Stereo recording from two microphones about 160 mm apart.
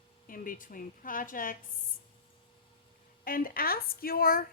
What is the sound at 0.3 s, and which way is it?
Speech, 60° left (ahead or behind).